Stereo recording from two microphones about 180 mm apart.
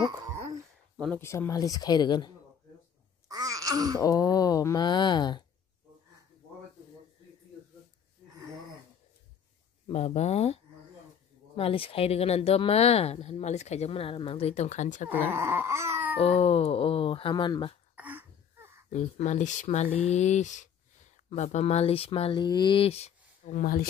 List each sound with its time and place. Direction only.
0.0 s a sound: 20° right (ahead or behind)
0.9 s speech: 5° left (ahead or behind)
1.2 s speech: 15° left (ahead or behind)
3.3 s a sound: 20° right (ahead or behind)
4.0 s speech: 20° left (ahead or behind)
8.3 s a sound: 20° right (ahead or behind)
9.8 s speech: 35° left (ahead or behind)
15.0 s baby cry: 10° right (ahead or behind)
16.2 s speech: 35° left (ahead or behind)
17.9 s throat clearing: 10° right (ahead or behind)
18.9 s speech: 40° left (ahead or behind)